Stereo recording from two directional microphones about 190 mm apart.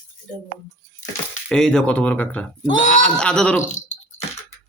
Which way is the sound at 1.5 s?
5° left (ahead or behind).